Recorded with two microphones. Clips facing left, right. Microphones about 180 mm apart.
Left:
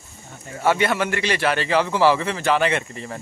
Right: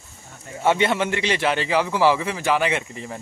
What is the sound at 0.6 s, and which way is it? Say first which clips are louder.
A man's voice: even; 20° right (ahead or behind).